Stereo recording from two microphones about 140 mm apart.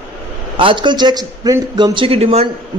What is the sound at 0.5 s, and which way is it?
A man's voice, 35° right (ahead or behind).